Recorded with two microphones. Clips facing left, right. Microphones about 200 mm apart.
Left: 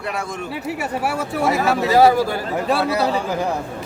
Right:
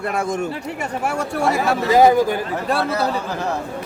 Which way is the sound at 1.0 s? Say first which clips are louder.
Right 1 dB; 5° left (ahead or behind).